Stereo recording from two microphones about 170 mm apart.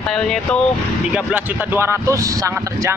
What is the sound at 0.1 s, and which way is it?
Speech, 5° left (ahead or behind).